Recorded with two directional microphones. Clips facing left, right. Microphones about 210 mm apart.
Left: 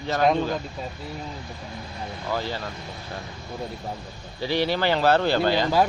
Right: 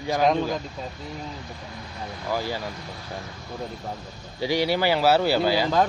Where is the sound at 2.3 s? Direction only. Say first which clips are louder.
Right 1 dB; 10° right (ahead or behind).